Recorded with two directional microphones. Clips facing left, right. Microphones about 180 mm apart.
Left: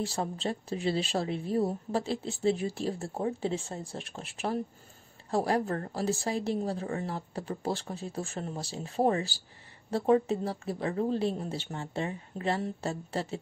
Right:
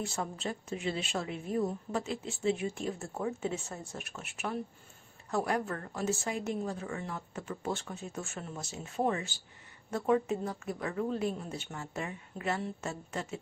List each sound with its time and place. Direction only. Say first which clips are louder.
0.0 s a woman's voice: left 4 dB; 30° left (ahead or behind)